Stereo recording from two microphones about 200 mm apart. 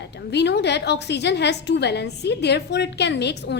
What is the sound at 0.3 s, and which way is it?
A woman's voice, 55° left (ahead or behind).